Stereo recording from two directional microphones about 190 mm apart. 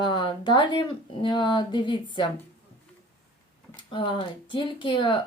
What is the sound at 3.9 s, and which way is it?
Speech, 25° left (ahead or behind).